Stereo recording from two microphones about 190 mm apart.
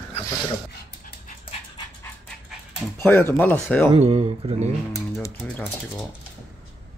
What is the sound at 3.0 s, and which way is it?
Speech, 10° left (ahead or behind).